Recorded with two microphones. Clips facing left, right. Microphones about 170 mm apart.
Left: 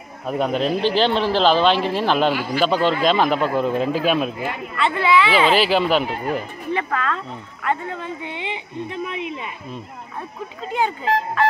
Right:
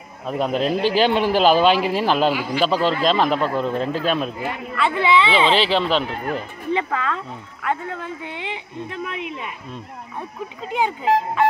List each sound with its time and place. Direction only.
0.3 s a man's voice: centre (ahead or behind)
4.7 s speech: 10° right (ahead or behind)
5.0 s speech: 25° right (ahead or behind)
5.5 s speech: 5° left (ahead or behind)
6.7 s speech: 15° right (ahead or behind)
7.6 s a man's voice: 5° right (ahead or behind)
10.7 s speech: 15° right (ahead or behind)